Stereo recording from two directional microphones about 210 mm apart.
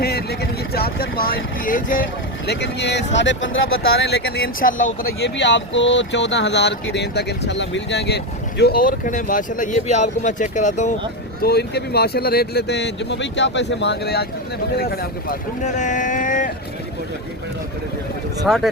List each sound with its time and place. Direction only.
0.0 s a sound: 50° left (ahead or behind)
1.6 s speech: 40° left (ahead or behind)
2.5 s speech: 55° left (ahead or behind); by 10.9 s 35° left (ahead or behind)
11.4 s speech: 50° left (ahead or behind)
18.4 s speech: centre (ahead or behind)